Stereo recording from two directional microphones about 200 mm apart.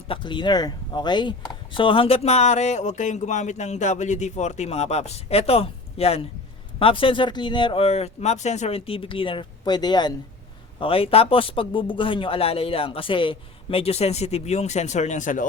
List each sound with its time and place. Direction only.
0.1 s speech: 25° left (ahead or behind); by 15.4 s 40° left (ahead or behind)